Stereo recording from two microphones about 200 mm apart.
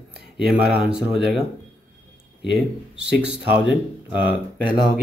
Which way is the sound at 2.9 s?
60° right (ahead or behind).